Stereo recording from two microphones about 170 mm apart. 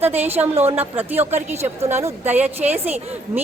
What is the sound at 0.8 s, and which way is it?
A woman's voice, 10° right (ahead or behind).